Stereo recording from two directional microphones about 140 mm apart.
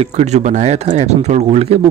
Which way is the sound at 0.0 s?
55° right (ahead or behind).